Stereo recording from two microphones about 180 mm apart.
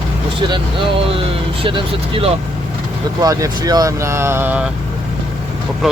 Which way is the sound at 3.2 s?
20° right (ahead or behind).